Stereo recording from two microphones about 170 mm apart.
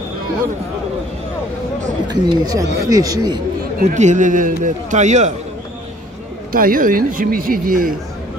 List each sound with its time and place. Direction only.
2.0 s speech: 20° right (ahead or behind)
3.9 s a man's voice: 45° right (ahead or behind)
6.5 s speech: 55° right (ahead or behind)